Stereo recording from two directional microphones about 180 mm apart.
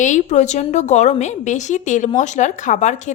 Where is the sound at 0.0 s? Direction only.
45° left (ahead or behind).